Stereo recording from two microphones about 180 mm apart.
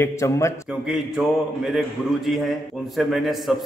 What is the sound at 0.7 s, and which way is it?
A man's voice, 5° right (ahead or behind).